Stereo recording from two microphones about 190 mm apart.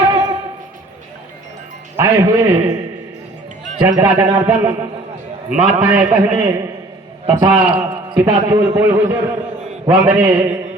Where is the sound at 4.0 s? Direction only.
10° right (ahead or behind).